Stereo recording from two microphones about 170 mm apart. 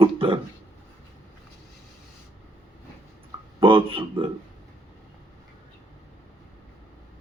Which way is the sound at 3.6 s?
30° right (ahead or behind).